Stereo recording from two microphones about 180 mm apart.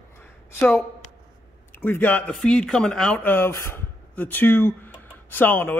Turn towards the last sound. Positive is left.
turn(degrees=10)  # may be behind; listen again after turning